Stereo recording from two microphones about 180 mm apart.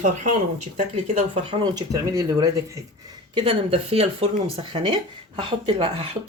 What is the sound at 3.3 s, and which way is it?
Speech, 30° right (ahead or behind).